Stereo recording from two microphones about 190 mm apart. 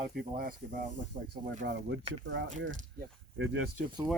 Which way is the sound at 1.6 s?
70° right (ahead or behind).